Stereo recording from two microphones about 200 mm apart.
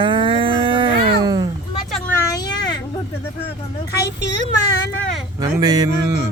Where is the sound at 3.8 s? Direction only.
55° left (ahead or behind).